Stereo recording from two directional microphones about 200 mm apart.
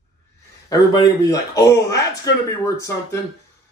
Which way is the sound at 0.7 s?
15° left (ahead or behind).